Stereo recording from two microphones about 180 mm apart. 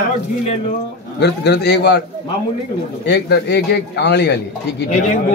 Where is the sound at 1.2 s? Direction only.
70° left (ahead or behind).